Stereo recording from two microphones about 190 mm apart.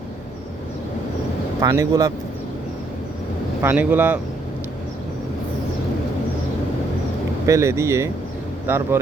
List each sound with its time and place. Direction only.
1.6 s speech: 20° right (ahead or behind)
3.6 s speech: 10° right (ahead or behind)
7.4 s speech: 15° right (ahead or behind)